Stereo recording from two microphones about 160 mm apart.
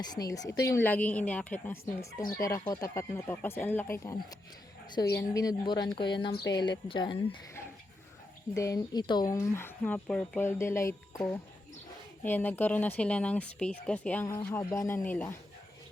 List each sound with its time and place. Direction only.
0.0 s a woman's voice: 25° left (ahead or behind)
8.5 s speech: 20° left (ahead or behind)
12.2 s speech: 10° left (ahead or behind)
14.3 s speech: 20° left (ahead or behind)